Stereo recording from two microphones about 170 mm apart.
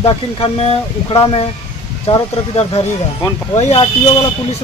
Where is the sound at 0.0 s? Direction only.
35° left (ahead or behind).